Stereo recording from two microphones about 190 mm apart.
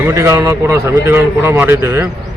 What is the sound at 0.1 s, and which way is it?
Speech, 15° right (ahead or behind).